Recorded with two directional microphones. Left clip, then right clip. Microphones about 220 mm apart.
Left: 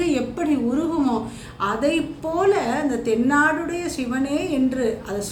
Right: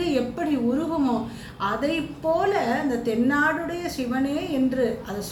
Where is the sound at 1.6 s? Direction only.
15° left (ahead or behind).